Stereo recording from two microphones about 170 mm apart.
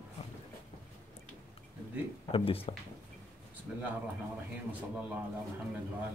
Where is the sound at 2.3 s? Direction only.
35° left (ahead or behind).